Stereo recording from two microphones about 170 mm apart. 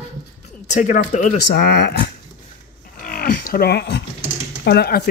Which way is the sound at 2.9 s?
60° left (ahead or behind).